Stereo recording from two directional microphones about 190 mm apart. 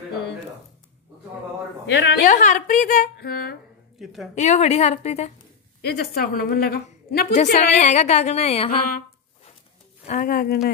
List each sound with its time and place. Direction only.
1.9 s a woman's voice: 65° left (ahead or behind)
2.2 s a woman's voice: 45° left (ahead or behind)
4.0 s a woman's voice: centre (ahead or behind)
4.4 s a woman's voice: 35° left (ahead or behind)
5.8 s a woman's voice: 55° left (ahead or behind)
7.3 s a woman's voice: 40° left (ahead or behind)
10.0 s a woman's voice: 45° left (ahead or behind)